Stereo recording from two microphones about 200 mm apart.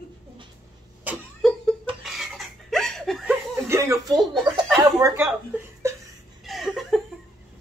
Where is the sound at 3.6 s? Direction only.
15° right (ahead or behind).